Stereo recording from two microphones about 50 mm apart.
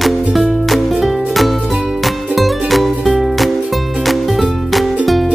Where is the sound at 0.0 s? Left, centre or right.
Centre.